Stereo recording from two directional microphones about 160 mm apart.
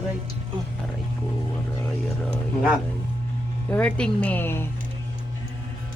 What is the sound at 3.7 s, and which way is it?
Speech, 10° left (ahead or behind).